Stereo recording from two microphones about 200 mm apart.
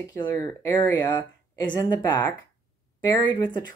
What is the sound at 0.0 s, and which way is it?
Speech, 15° left (ahead or behind).